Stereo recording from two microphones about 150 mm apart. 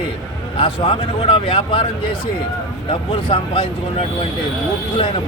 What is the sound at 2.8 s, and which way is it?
A man's voice, 35° left (ahead or behind).